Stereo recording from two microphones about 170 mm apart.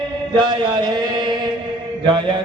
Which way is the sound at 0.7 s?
25° right (ahead or behind).